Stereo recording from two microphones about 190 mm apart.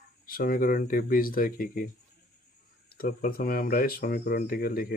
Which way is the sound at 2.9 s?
50° left (ahead or behind).